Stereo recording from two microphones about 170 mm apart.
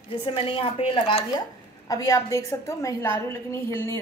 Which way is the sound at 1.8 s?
20° left (ahead or behind).